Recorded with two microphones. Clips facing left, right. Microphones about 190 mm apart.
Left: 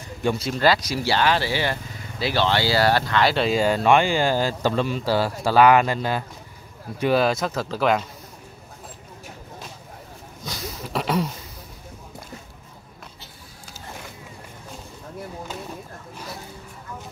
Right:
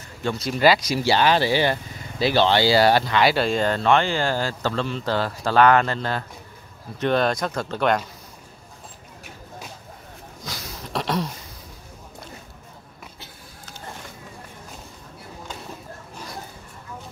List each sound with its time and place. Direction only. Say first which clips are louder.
0.2 s speech: left 3 dB; 10° left (ahead or behind)
0.5 s speech: right 4 dB; 10° right (ahead or behind)
3.3 s speech: left 1 dB; 5° left (ahead or behind)
10.9 s a sound: left 1 dB; 5° left (ahead or behind)